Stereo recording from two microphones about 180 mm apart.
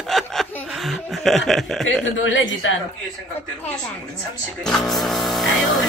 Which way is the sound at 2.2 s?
90° left.